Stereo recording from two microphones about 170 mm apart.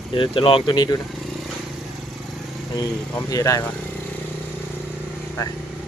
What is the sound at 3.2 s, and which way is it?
Speech, 20° left (ahead or behind).